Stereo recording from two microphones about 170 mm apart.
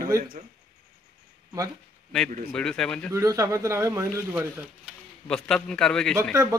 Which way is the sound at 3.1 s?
20° right (ahead or behind).